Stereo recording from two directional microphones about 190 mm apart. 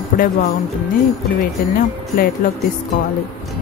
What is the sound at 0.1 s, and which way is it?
Speech, 45° left (ahead or behind).